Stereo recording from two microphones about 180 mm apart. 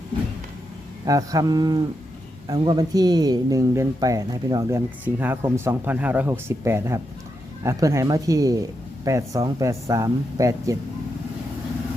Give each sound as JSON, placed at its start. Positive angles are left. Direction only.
{"t": 1.0, "sound": "speech", "side_deg": -20}